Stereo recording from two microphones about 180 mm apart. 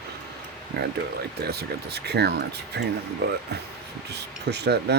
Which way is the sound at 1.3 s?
60° right (ahead or behind).